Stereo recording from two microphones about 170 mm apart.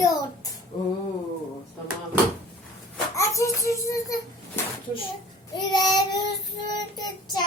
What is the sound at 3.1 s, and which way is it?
Child singing, 20° left (ahead or behind).